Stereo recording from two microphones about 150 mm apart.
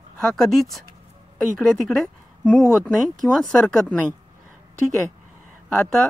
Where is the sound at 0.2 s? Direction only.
Centre (ahead or behind).